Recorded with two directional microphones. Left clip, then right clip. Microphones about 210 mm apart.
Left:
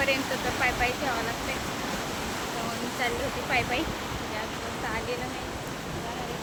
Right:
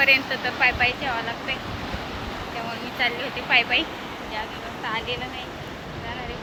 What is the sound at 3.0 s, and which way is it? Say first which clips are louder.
Speech: right 6 dB; 15° left (ahead or behind).